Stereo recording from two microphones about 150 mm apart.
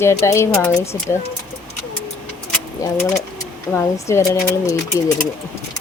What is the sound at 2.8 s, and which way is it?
Speech, 20° left (ahead or behind).